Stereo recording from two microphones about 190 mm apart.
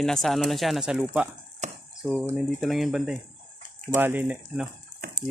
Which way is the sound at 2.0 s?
5° left (ahead or behind).